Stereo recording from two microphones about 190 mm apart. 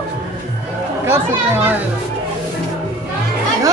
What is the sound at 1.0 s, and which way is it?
Speech, 10° right (ahead or behind).